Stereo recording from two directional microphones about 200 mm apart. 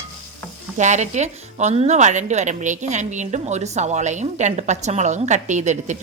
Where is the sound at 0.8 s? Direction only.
35° right (ahead or behind).